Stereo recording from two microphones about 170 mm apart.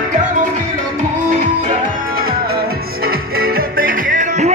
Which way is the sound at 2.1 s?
60° right (ahead or behind).